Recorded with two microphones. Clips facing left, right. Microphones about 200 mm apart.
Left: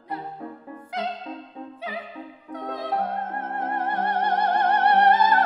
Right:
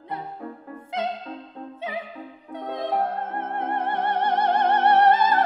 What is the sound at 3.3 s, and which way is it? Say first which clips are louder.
Music: right 1 dB; 25° right (ahead or behind).